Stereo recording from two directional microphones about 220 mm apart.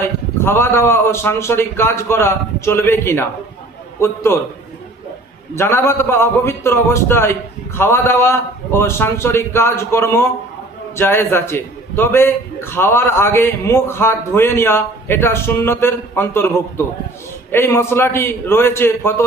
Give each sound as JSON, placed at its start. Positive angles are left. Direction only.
{"t": 0.0, "sound": "a man's voice", "side_deg": 10}
{"t": 5.5, "sound": "a man's voice", "side_deg": 10}